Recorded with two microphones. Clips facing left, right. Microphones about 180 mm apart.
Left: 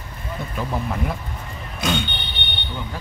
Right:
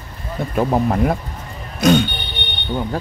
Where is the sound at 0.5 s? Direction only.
50° right (ahead or behind).